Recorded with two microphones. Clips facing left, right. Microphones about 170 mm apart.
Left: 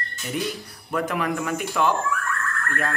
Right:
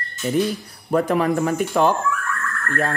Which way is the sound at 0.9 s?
35° right (ahead or behind).